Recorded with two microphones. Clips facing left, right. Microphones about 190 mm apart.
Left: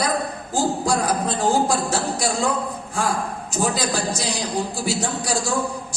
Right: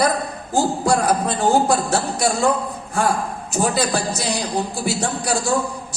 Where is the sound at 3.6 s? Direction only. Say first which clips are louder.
Right 3 dB; 60° right (ahead or behind).